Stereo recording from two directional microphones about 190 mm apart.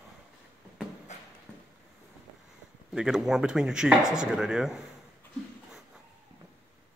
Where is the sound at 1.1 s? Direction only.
35° left (ahead or behind).